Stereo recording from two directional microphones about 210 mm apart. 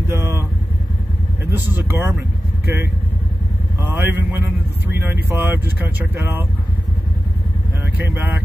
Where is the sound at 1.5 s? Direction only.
10° right (ahead or behind).